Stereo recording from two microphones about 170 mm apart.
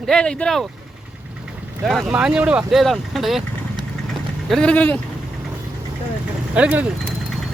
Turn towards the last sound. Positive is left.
turn(degrees=-10)  # may be behind; listen again after turning